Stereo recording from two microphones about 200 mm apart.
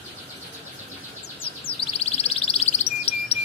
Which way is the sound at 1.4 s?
25° left (ahead or behind).